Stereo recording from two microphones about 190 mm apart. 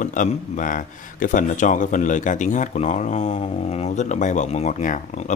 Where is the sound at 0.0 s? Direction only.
45° left (ahead or behind).